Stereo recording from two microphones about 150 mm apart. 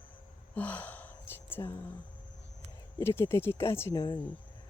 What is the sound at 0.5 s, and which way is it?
Gasp, 10° left (ahead or behind).